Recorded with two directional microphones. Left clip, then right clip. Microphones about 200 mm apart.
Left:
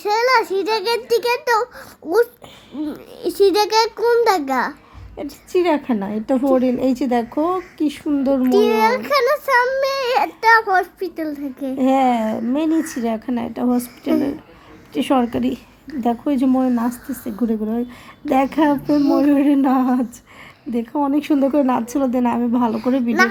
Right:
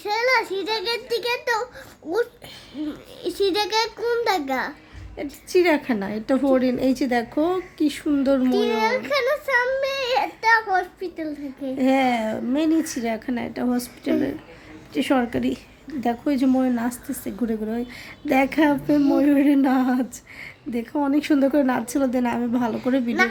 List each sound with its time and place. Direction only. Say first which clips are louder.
0.0 s a sound: left 5 dB; 40° left (ahead or behind)
1.1 s a child's voice: left 7 dB; 40° left (ahead or behind)
5.1 s a woman's voice: left 1 dB; centre (ahead or behind)
8.4 s a child's voice: left 6 dB; 40° left (ahead or behind)
11.8 s a woman's voice: left 4 dB; 5° left (ahead or behind)
18.9 s a child's voice: left 4 dB; 40° left (ahead or behind)
19.2 s a woman's voice: left 3 dB; centre (ahead or behind)